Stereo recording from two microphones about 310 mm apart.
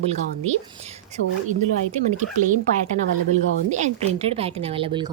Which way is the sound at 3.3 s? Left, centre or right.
Right.